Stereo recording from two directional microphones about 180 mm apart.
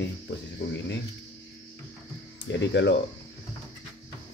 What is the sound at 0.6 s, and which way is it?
Speech, 75° left (ahead or behind).